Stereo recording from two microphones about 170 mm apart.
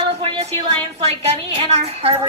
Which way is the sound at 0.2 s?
35° right (ahead or behind).